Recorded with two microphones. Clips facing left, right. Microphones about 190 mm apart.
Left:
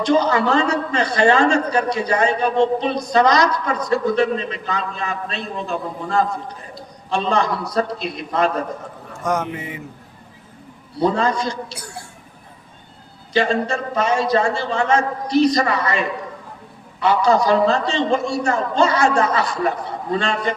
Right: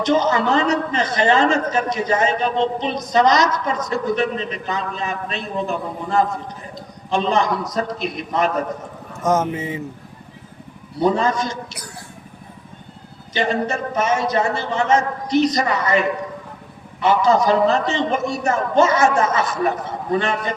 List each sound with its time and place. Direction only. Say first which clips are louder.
0.0 s a man's voice: left 1 dB; 20° right (ahead or behind)
11.0 s a man's voice: even; 20° right (ahead or behind)
13.3 s a man's voice: left 2 dB; 20° right (ahead or behind)